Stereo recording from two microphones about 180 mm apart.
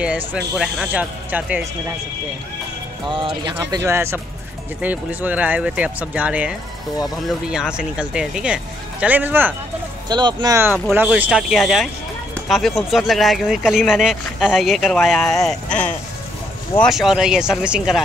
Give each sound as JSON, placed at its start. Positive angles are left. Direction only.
{"t": 0.0, "sound": "speech", "side_deg": -5}
{"t": 3.1, "sound": "speech", "side_deg": -25}
{"t": 3.8, "sound": "speech", "side_deg": -15}
{"t": 10.0, "sound": "speech", "side_deg": -25}